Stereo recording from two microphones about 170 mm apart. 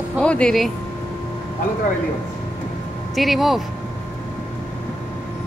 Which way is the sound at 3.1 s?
Centre (ahead or behind).